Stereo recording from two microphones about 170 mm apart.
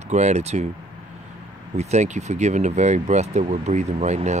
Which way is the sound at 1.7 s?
40° right (ahead or behind).